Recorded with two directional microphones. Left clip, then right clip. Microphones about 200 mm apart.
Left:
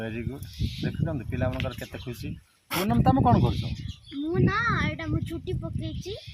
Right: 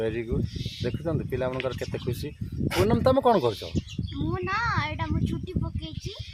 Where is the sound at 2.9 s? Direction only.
45° right (ahead or behind).